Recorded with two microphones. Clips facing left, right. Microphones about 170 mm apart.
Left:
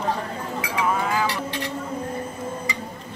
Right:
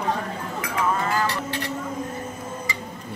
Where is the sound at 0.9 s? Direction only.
5° left (ahead or behind).